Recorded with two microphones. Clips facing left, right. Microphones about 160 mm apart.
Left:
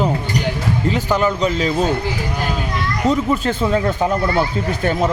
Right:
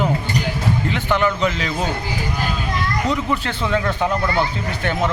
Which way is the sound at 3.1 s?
45° left (ahead or behind).